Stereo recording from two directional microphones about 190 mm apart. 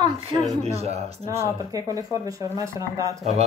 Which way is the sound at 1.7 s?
15° right (ahead or behind).